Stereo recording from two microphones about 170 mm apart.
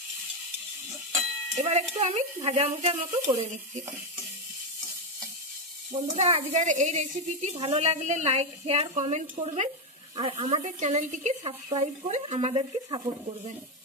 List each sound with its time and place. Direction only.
1.5 s speech: 40° right (ahead or behind)
5.9 s speech: 40° right (ahead or behind)
11.4 s speech: 30° right (ahead or behind)